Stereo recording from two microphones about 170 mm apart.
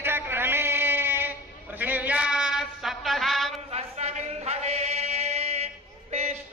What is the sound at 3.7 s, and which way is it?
Chant, 40° right (ahead or behind).